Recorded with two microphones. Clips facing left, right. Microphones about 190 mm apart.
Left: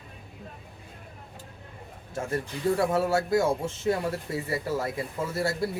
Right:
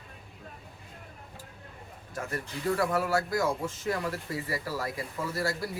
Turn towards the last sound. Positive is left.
turn(degrees=25)  # may be behind; listen again after turning